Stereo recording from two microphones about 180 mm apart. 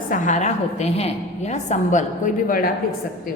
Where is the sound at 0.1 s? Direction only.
45° left (ahead or behind).